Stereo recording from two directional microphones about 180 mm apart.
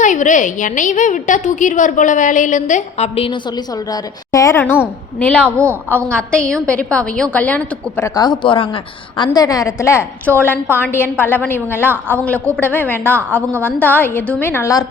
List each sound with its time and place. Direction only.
0.0 s a woman's voice: 45° left (ahead or behind)
3.9 s a woman's voice: 20° left (ahead or behind)
5.5 s a woman's voice: 15° right (ahead or behind)
6.1 s a woman's voice: 5° left (ahead or behind)